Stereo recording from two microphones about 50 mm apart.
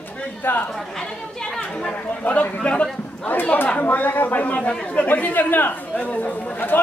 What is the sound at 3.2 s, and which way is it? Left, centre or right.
Speech, left.